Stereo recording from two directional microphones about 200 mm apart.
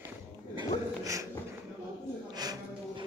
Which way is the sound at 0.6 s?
15° right (ahead or behind).